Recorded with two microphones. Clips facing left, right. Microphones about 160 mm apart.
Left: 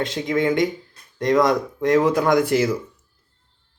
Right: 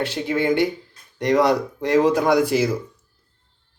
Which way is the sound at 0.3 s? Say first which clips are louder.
Even; 80° right.